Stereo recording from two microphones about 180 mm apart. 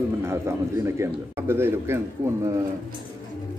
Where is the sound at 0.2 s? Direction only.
15° right (ahead or behind).